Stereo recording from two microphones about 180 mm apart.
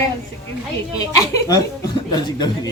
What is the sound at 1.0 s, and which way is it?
Speech, 20° left (ahead or behind).